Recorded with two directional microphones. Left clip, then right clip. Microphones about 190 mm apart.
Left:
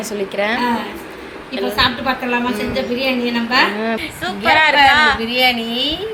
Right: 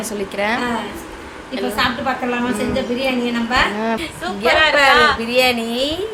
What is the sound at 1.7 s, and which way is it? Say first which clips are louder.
Speech: left 2 dB; 20° right (ahead or behind).